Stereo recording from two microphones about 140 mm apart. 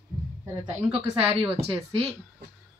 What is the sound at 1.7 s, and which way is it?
Speech, 45° right (ahead or behind).